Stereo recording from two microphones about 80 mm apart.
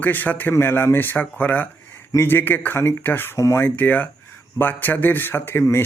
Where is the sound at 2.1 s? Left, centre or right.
Left.